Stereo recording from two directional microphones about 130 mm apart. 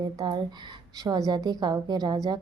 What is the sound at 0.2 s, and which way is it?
A woman's voice, 35° right (ahead or behind).